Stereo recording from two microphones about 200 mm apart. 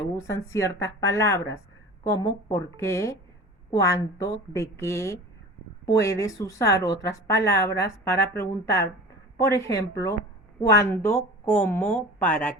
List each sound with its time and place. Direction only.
0.2 s speech: 15° left (ahead or behind)